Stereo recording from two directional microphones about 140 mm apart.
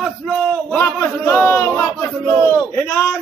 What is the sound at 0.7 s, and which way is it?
Speech, 10° left (ahead or behind).